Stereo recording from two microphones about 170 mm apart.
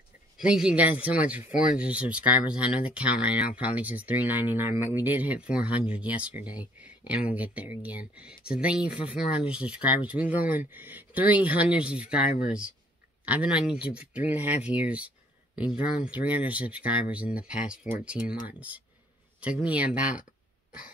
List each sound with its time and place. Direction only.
0.4 s speech: 5° right (ahead or behind)